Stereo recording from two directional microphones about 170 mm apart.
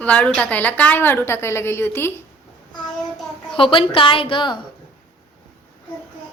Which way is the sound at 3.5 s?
30° left (ahead or behind).